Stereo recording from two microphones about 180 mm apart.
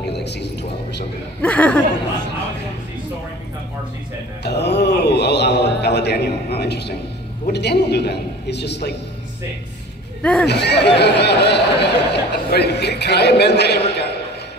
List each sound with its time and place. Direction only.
0.0 s music: 70° left (ahead or behind)
1.4 s speech: 5° left (ahead or behind)
4.4 s a sound: 70° left (ahead or behind)
7.4 s speech: 65° left (ahead or behind)
10.4 s speech: 70° left (ahead or behind)